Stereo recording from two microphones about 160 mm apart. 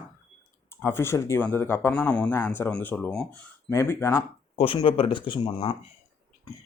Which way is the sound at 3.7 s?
15° left (ahead or behind).